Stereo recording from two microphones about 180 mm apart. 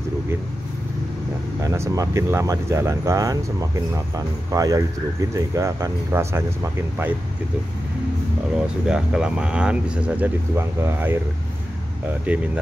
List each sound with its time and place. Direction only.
1.6 s speech: 15° right (ahead or behind)
8.5 s speech: 5° right (ahead or behind)
12.3 s speech: 5° right (ahead or behind)